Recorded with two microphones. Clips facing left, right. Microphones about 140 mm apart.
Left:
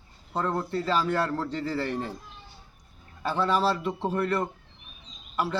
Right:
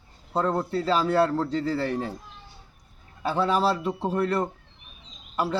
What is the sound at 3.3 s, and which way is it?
Speech, 35° right (ahead or behind).